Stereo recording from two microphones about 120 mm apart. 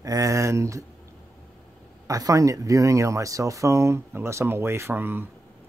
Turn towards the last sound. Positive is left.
turn(degrees=-15)  # may be behind; listen again after turning